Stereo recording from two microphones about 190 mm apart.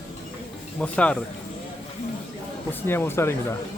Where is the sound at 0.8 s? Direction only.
5° left (ahead or behind).